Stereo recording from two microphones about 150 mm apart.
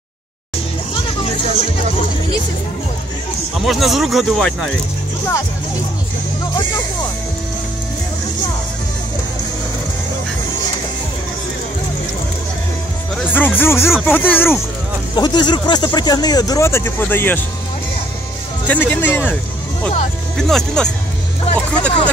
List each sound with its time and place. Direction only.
3.5 s speech: centre (ahead or behind)
13.1 s speech: 10° left (ahead or behind)
15.1 s speech: 30° left (ahead or behind); by 17.4 s 15° left (ahead or behind)
18.7 s speech: 10° left (ahead or behind)
20.3 s speech: 5° left (ahead or behind)